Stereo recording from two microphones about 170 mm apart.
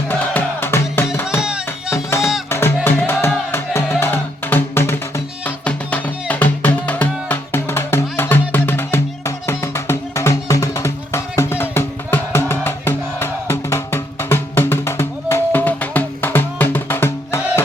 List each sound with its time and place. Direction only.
0.1 s music: 10° left (ahead or behind)
1.4 s music: 5° right (ahead or behind)
1.9 s music: 15° left (ahead or behind)